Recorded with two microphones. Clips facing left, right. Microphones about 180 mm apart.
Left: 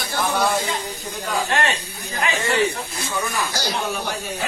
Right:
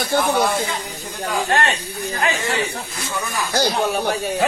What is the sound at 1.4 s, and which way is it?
Speech, 40° right (ahead or behind).